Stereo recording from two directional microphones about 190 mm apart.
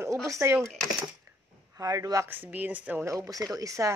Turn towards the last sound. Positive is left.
turn(degrees=-15)  # may be behind; listen again after turning